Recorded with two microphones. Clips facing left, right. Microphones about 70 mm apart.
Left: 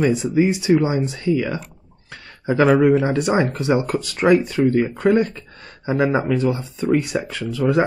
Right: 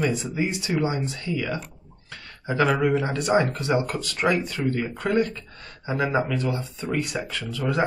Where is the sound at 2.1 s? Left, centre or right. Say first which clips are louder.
Left 7 dB; left.